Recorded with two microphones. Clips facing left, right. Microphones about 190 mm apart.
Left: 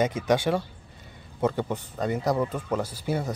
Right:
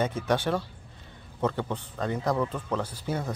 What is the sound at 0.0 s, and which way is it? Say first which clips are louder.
Speech: left 3 dB; 10° left (ahead or behind).